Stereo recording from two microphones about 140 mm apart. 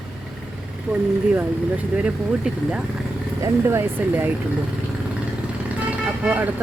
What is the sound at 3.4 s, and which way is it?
Speech, 20° right (ahead or behind).